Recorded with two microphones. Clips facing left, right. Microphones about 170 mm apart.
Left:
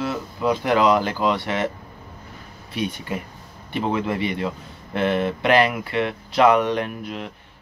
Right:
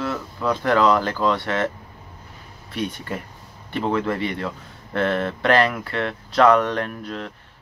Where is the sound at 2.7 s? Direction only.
15° left (ahead or behind).